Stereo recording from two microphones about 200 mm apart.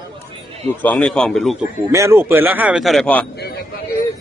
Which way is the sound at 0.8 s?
5° left (ahead or behind).